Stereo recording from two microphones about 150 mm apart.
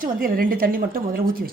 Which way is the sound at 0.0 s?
70° right (ahead or behind).